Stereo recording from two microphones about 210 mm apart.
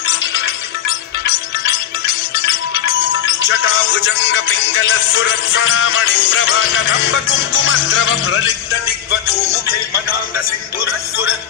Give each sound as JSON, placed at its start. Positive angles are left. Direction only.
{"t": 3.4, "sound": "music", "side_deg": 70}
{"t": 8.8, "sound": "music", "side_deg": 50}